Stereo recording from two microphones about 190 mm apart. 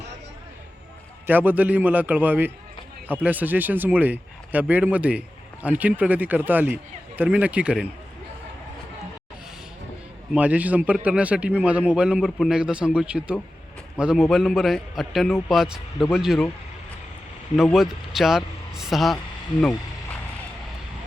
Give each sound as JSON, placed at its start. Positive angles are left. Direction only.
{"t": 1.3, "sound": "speech", "side_deg": -10}
{"t": 10.3, "sound": "a man's voice", "side_deg": -10}
{"t": 17.6, "sound": "speech", "side_deg": 0}